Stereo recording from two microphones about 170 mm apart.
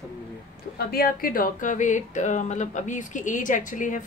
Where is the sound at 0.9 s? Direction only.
60° left (ahead or behind).